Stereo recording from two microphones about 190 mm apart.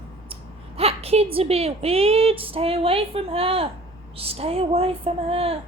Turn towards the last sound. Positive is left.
turn(degrees=-30)  # may be behind; listen again after turning